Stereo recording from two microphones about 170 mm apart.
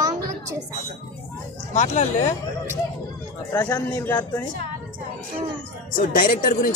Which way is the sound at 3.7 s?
20° left (ahead or behind).